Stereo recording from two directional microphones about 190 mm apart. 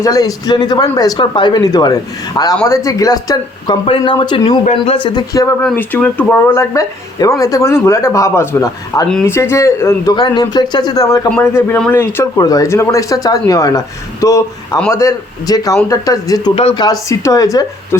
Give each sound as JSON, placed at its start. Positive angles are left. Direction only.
{"t": 0.0, "sound": "a man's voice", "side_deg": 15}